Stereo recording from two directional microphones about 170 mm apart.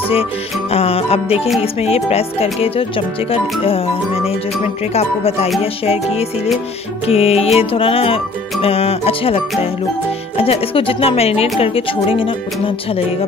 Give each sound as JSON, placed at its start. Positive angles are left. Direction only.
{"t": 0.7, "sound": "music", "side_deg": 35}